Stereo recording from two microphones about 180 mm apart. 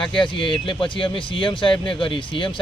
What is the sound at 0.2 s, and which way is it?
Speech, 30° left (ahead or behind).